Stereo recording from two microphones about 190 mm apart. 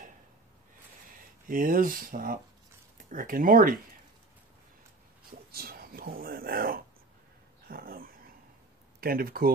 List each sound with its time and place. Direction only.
1.5 s speech: 45° right (ahead or behind)
5.5 s speech: 50° right (ahead or behind)
7.6 s dog: 50° right (ahead or behind)
9.0 s speech: 50° right (ahead or behind)